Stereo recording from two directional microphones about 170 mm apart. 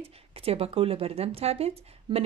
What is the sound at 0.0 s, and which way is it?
Speech, 35° right (ahead or behind).